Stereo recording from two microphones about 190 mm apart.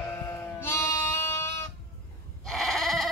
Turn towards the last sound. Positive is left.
turn(degrees=0)  # may be behind; listen again after turning